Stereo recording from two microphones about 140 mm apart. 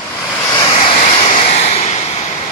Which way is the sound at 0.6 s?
40° left (ahead or behind).